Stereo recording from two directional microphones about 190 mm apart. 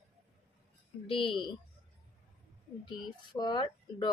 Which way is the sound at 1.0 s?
25° left (ahead or behind).